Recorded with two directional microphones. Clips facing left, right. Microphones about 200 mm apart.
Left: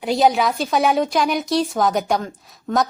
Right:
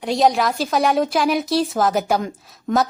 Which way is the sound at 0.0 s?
Centre (ahead or behind).